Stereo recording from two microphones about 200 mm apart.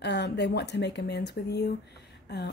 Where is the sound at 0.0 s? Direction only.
60° left (ahead or behind).